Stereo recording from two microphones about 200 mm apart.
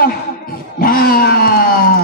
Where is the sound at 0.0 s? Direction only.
45° left (ahead or behind).